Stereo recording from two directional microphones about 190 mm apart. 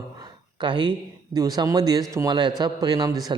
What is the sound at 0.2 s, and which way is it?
Speech, 25° right (ahead or behind).